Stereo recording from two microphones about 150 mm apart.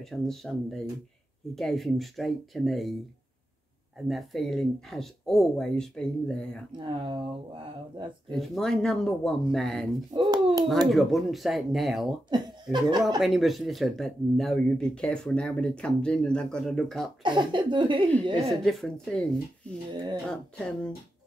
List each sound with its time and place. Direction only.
0.0 s speech: centre (ahead or behind)
4.1 s speech: centre (ahead or behind)
6.8 s speech: 30° right (ahead or behind)
8.3 s speech: 5° left (ahead or behind)
10.1 s speech: 30° right (ahead or behind)
10.9 s speech: centre (ahead or behind)
12.3 s chuckle: 30° right (ahead or behind)
13.2 s speech: centre (ahead or behind)
17.2 s speech: 30° right (ahead or behind)
18.7 s speech: centre (ahead or behind)
19.9 s speech: 30° right (ahead or behind)
20.2 s speech: 5° left (ahead or behind)